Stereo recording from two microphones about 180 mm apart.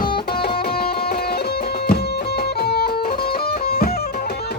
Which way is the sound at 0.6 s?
60° left (ahead or behind).